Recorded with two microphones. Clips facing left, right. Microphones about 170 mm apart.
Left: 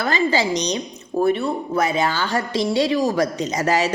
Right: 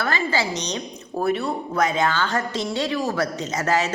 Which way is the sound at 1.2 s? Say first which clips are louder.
Left 4 dB; centre (ahead or behind).